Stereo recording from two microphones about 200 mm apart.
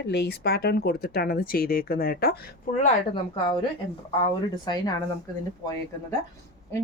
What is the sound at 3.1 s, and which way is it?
Speech, 25° left (ahead or behind).